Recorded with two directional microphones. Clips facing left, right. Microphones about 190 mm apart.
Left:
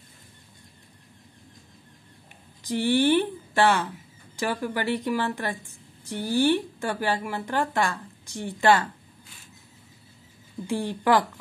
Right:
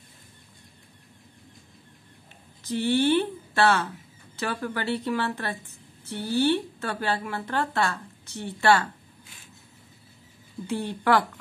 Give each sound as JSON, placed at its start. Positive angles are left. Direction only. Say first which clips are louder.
{"t": 2.6, "sound": "speech", "louder": "left 1 dB", "side_deg": 15}
{"t": 10.7, "sound": "speech", "louder": "left 1 dB", "side_deg": 15}